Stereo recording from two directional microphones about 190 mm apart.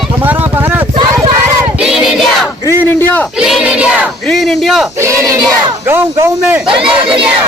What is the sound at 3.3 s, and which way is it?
Battle cry, centre (ahead or behind).